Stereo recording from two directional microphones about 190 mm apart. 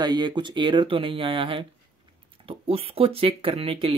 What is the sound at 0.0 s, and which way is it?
Speech, 20° right (ahead or behind).